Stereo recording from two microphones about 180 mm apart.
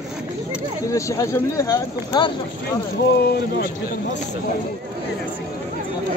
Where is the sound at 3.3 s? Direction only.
65° left (ahead or behind).